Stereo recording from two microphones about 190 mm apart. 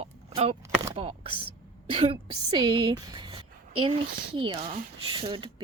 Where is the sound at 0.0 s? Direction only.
35° right (ahead or behind).